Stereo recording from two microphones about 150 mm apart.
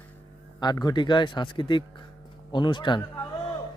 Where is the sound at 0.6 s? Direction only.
25° left (ahead or behind).